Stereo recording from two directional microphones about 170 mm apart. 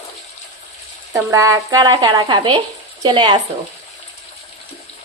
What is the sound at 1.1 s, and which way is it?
Speech, 20° right (ahead or behind).